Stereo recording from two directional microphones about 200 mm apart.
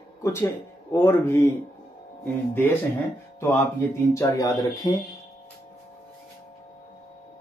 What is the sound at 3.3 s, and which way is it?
Speech, 10° left (ahead or behind).